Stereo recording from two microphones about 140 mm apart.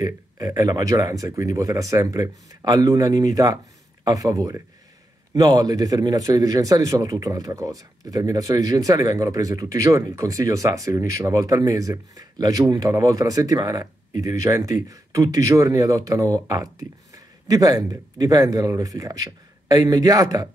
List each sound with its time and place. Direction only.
0.0 s speech: 25° right (ahead or behind)